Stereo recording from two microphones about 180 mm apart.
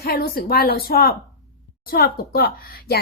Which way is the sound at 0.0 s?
55° left (ahead or behind).